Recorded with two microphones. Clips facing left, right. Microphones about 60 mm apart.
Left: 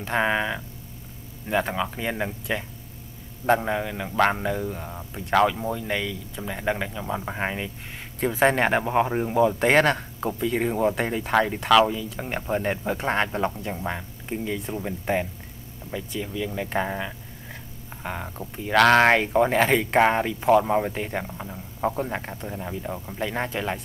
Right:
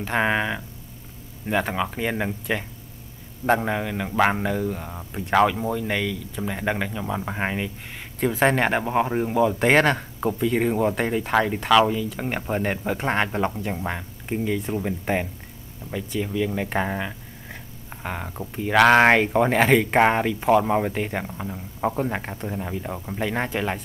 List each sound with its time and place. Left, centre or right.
0.2 s speech: centre
1.5 s speech: centre
5.8 s speech: centre
6.4 s speech: centre
8.2 s speech: centre